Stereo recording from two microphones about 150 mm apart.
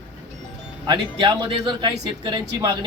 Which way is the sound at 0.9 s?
30° right (ahead or behind).